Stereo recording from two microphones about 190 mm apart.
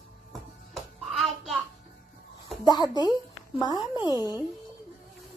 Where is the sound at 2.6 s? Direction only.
20° left (ahead or behind).